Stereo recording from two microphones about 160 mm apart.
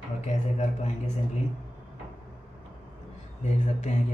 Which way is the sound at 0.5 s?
45° left (ahead or behind).